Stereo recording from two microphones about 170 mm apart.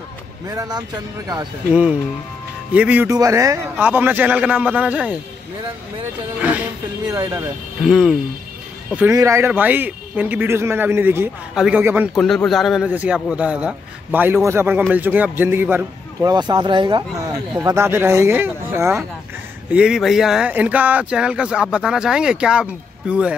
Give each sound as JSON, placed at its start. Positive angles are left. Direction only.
{"t": 0.5, "sound": "speech", "side_deg": -20}
{"t": 1.7, "sound": "a man's voice", "side_deg": -5}
{"t": 3.1, "sound": "a man's voice", "side_deg": -20}
{"t": 7.1, "sound": "speech", "side_deg": -20}
{"t": 7.8, "sound": "speech", "side_deg": 0}
{"t": 8.9, "sound": "a man's voice", "side_deg": -15}
{"t": 12.2, "sound": "a man's voice", "side_deg": 5}
{"t": 16.2, "sound": "speech", "side_deg": -25}
{"t": 17.6, "sound": "a man's voice", "side_deg": -15}
{"t": 19.7, "sound": "speech", "side_deg": -5}